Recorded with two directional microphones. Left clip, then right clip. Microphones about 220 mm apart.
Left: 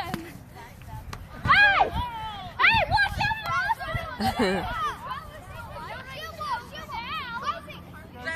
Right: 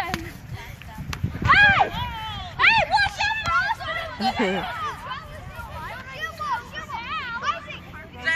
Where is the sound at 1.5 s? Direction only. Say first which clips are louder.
Right 3 dB; 45° right (ahead or behind).